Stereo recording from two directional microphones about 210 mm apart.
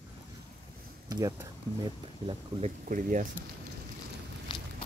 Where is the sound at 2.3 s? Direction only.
30° right (ahead or behind).